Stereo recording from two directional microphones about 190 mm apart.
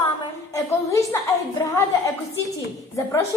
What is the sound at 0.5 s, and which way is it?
Speech, 15° left (ahead or behind).